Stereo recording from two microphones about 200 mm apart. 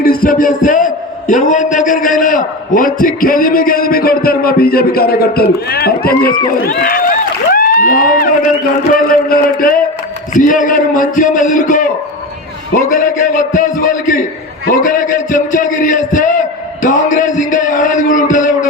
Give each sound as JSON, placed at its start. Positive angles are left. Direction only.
{"t": 0.0, "sound": "a man's voice", "side_deg": 45}
{"t": 7.5, "sound": "a sound", "side_deg": 45}
{"t": 8.9, "sound": "a man's voice", "side_deg": 45}